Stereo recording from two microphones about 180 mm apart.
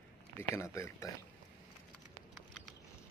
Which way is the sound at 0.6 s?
15° left (ahead or behind).